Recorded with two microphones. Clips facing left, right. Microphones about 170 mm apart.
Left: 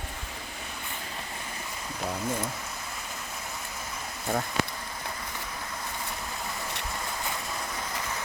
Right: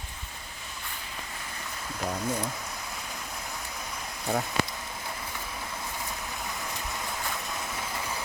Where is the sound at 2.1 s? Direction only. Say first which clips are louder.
Even; 5° left (ahead or behind).